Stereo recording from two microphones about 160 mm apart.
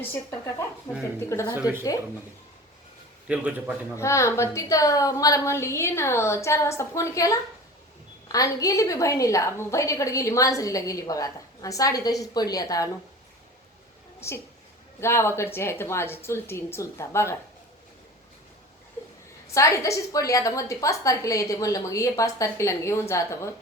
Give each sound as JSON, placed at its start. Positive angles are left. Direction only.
{"t": 0.1, "sound": "a woman's voice", "side_deg": 15}
{"t": 1.5, "sound": "a man's voice", "side_deg": -15}
{"t": 3.2, "sound": "a man's voice", "side_deg": -10}
{"t": 3.9, "sound": "a woman's voice", "side_deg": 20}
{"t": 14.2, "sound": "a woman's voice", "side_deg": 15}
{"t": 19.5, "sound": "a woman's voice", "side_deg": 20}